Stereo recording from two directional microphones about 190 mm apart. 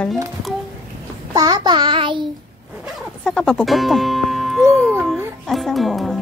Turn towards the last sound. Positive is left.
turn(degrees=0)  # may be behind; listen again after turning